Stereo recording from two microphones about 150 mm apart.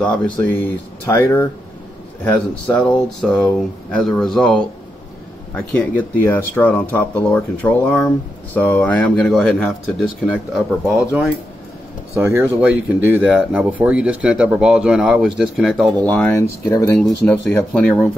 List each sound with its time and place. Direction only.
0.0 s speech: 10° left (ahead or behind)
12.2 s speech: 15° right (ahead or behind); by 15.9 s centre (ahead or behind)
16.0 s speech: 10° left (ahead or behind)
16.6 s speech: 25° left (ahead or behind)
16.9 s speech: 5° left (ahead or behind)